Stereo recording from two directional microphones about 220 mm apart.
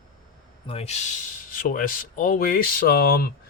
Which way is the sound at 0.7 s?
30° left (ahead or behind).